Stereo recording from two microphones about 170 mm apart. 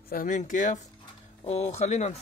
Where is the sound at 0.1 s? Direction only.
50° left (ahead or behind).